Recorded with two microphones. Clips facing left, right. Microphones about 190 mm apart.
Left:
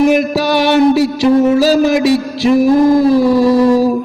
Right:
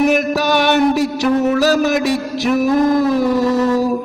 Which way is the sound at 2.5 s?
35° left (ahead or behind).